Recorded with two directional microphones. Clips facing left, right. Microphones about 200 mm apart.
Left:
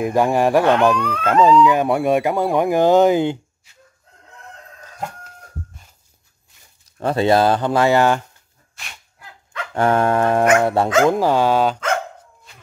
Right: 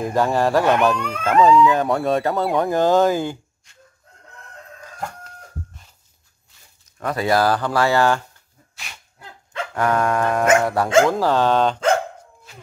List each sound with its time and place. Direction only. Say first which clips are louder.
0.0 s speech: left 2 dB; 15° left (ahead or behind)
1.4 s speech: left 1 dB; centre (ahead or behind)
1.7 s speech: left 2 dB; 15° left (ahead or behind)
7.0 s speech: left 4 dB; 25° left (ahead or behind)
9.2 s dog: right 2 dB; 25° right (ahead or behind)
9.8 s speech: left 3 dB; 30° left (ahead or behind); by 11.8 s 5° left (ahead or behind)